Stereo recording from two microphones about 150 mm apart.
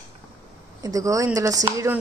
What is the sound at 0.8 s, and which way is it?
Speech, 25° right (ahead or behind).